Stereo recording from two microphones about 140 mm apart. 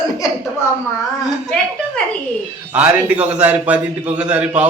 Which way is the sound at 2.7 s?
10° right (ahead or behind).